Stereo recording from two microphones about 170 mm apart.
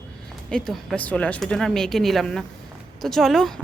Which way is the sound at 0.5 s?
Centre (ahead or behind).